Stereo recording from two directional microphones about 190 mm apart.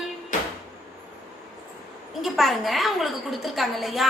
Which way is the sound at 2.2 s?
Centre (ahead or behind).